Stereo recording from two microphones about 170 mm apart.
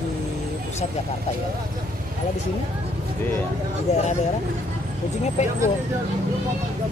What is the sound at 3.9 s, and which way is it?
Speech, 40° left (ahead or behind).